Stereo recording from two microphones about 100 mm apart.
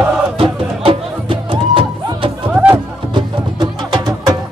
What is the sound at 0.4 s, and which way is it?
Music, 70° right (ahead or behind).